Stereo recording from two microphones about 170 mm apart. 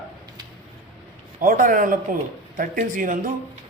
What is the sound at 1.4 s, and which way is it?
Speech, 55° right (ahead or behind).